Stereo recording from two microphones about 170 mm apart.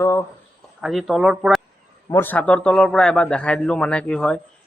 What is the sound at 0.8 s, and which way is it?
Speech, centre (ahead or behind).